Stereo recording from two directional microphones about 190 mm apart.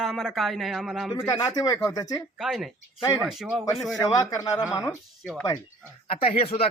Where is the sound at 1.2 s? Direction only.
20° left (ahead or behind).